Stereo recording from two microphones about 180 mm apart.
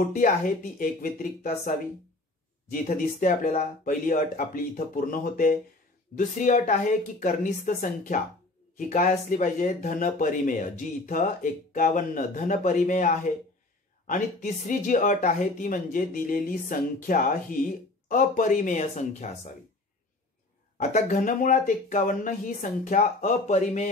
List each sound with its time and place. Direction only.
0.0 s speech: 45° left (ahead or behind)
2.7 s speech: 45° left (ahead or behind)
20.7 s speech: 45° left (ahead or behind)